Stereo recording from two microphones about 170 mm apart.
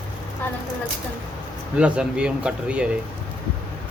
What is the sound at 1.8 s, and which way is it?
A man's voice, 5° right (ahead or behind).